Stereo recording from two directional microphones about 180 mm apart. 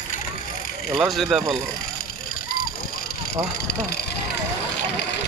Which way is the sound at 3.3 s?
60° left (ahead or behind).